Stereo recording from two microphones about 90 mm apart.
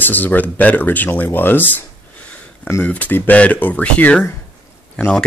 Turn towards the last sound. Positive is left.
turn(degrees=15)  # may be behind; listen again after turning